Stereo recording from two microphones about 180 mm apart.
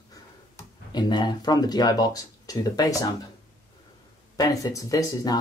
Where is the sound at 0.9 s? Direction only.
25° left (ahead or behind).